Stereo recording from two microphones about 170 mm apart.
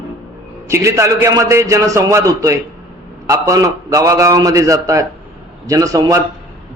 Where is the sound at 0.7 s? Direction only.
15° right (ahead or behind).